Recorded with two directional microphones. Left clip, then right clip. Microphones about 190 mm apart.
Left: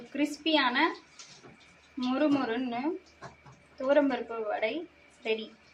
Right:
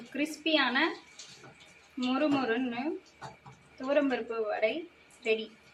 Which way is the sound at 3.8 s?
15° left (ahead or behind).